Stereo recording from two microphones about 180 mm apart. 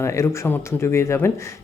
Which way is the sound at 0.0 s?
15° left (ahead or behind).